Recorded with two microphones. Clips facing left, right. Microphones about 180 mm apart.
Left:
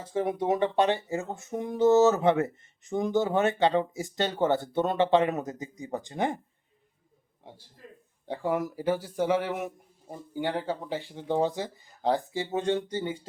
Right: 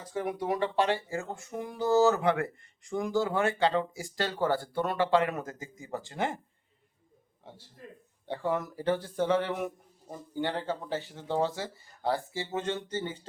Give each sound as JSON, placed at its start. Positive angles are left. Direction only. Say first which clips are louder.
{"t": 0.0, "sound": "speech", "louder": "left 4 dB", "side_deg": 25}
{"t": 8.3, "sound": "speech", "louder": "left 2 dB", "side_deg": 10}